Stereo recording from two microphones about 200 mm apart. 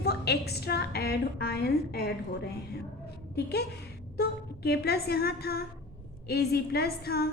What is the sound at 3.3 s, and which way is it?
A woman's voice, 55° left (ahead or behind).